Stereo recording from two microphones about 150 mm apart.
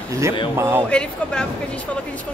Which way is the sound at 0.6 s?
15° right (ahead or behind).